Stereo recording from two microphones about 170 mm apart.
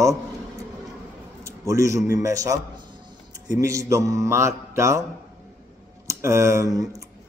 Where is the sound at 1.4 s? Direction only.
20° right (ahead or behind).